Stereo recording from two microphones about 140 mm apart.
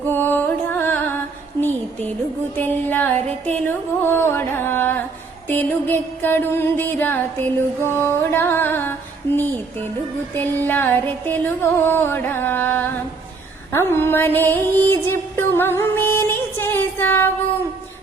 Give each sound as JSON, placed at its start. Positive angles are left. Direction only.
{"t": 0.0, "sound": "music", "side_deg": 15}
{"t": 2.6, "sound": "music", "side_deg": 15}